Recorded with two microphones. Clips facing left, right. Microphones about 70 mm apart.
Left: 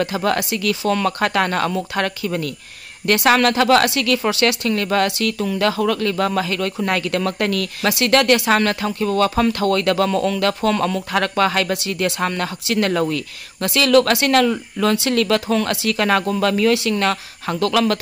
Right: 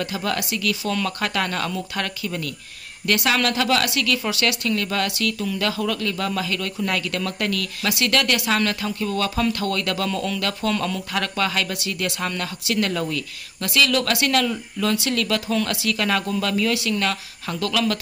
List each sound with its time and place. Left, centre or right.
0.0 s speech: left